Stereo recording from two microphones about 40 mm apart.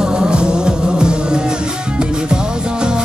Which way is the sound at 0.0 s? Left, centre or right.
Centre.